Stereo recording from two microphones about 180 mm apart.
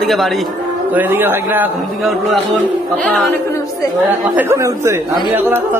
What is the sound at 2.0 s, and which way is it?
A man's voice, centre (ahead or behind).